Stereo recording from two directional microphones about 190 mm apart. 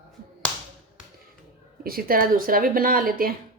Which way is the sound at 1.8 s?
50° right (ahead or behind).